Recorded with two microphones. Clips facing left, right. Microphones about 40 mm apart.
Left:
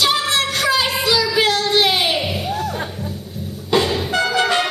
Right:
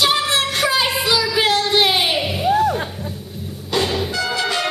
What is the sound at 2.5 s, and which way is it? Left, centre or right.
Music, centre.